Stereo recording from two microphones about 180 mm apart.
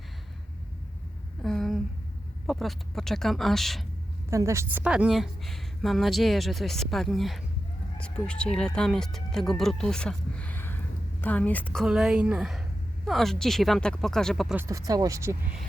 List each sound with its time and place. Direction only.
1.4 s a sound: centre (ahead or behind)
2.5 s a woman's voice: centre (ahead or behind)
4.3 s a woman's voice: 15° right (ahead or behind); by 14.5 s centre (ahead or behind)
14.5 s speech: 15° right (ahead or behind)